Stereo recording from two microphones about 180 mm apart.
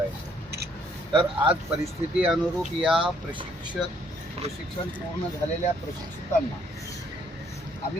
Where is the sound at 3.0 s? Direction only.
25° right (ahead or behind).